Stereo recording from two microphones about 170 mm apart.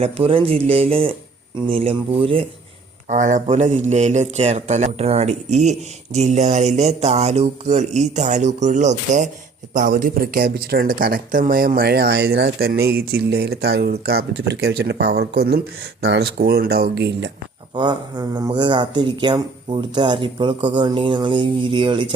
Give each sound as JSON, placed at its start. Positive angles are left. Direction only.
{"t": 0.0, "sound": "speech", "side_deg": -30}
{"t": 3.1, "sound": "a sound", "side_deg": -45}
{"t": 9.7, "sound": "speech", "side_deg": -55}
{"t": 17.7, "sound": "speech", "side_deg": -25}